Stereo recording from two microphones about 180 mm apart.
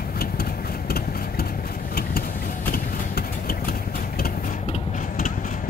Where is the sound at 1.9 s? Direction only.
55° left (ahead or behind).